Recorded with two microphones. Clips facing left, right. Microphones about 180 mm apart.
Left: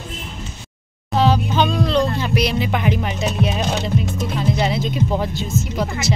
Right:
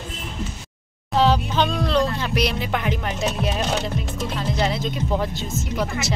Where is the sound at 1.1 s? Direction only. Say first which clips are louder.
Left 2 dB; centre (ahead or behind).